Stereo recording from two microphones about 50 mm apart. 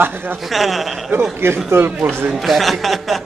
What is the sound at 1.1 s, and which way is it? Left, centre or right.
Speech, right.